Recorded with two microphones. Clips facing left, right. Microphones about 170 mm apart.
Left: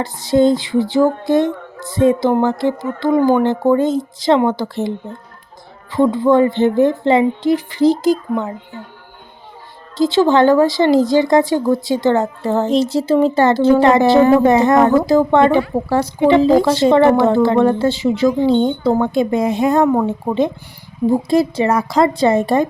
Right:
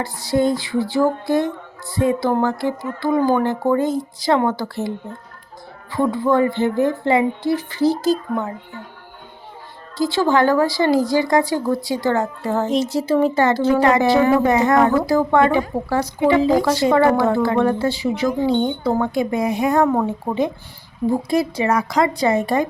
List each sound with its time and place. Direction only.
0.0 s a woman's voice: 20° left (ahead or behind)
5.9 s a woman's voice: 20° left (ahead or behind)
10.0 s a woman's voice: 20° left (ahead or behind)